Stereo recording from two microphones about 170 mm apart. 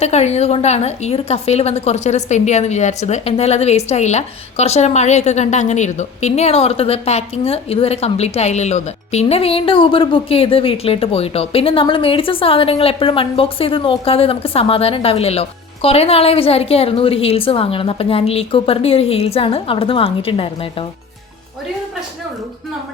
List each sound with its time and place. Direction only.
0.0 s a woman's voice: 40° left (ahead or behind)